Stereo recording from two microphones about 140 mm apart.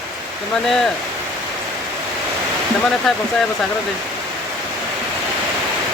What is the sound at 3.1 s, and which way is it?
Speech, 5° left (ahead or behind).